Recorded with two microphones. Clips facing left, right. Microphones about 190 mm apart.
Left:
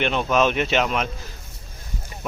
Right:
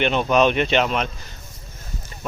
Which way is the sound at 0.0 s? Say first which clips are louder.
Right 2 dB; centre (ahead or behind).